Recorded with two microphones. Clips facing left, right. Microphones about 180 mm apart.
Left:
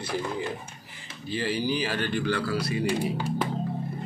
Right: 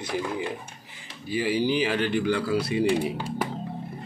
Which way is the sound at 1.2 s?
10° right (ahead or behind).